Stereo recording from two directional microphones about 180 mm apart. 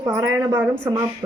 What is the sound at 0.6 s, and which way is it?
Speech, 10° right (ahead or behind).